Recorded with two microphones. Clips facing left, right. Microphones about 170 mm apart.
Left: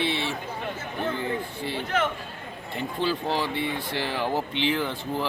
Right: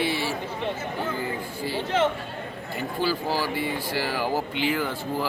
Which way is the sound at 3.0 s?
5° right (ahead or behind).